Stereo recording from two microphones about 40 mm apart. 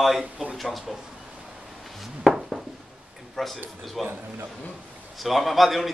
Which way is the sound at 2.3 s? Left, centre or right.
Centre.